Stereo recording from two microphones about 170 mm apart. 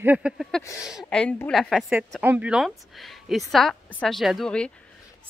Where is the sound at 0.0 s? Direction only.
10° right (ahead or behind).